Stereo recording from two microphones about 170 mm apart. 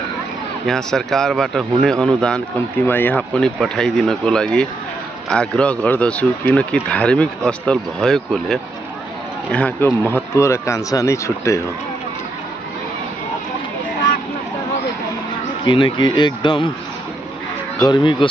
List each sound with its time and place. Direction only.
0.7 s speech: 5° left (ahead or behind)
15.6 s speech: 30° left (ahead or behind)
17.8 s speech: 25° left (ahead or behind)